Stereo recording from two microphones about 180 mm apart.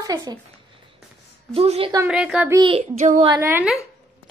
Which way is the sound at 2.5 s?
30° right (ahead or behind).